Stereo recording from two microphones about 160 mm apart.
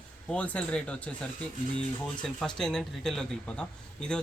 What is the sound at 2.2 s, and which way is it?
Speech, 5° left (ahead or behind).